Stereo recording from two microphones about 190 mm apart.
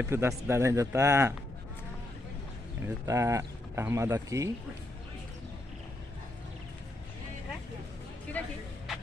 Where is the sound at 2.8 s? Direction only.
15° right (ahead or behind).